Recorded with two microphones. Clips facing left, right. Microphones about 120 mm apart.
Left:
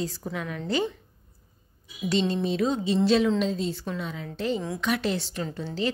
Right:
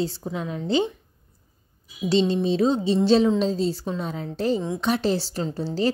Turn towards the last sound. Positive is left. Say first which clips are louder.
# right 5 dB
turn(degrees=-35)  # may be behind; listen again after turning